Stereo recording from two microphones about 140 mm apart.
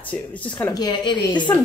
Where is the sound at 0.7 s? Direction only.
30° left (ahead or behind).